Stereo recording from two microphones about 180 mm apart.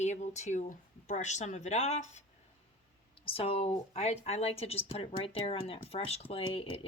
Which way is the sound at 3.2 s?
30° left (ahead or behind).